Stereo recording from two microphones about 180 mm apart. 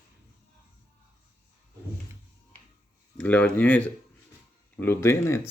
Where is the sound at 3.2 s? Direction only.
10° left (ahead or behind).